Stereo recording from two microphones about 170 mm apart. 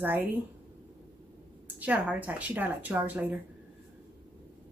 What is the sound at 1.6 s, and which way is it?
Speech, 10° right (ahead or behind).